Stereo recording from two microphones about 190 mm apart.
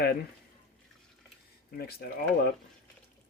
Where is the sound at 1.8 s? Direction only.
55° left (ahead or behind).